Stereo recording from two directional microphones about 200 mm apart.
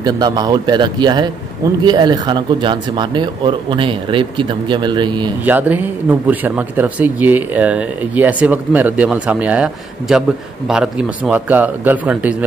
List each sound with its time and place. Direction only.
0.0 s speech: 20° right (ahead or behind)
5.4 s speech: 10° right (ahead or behind)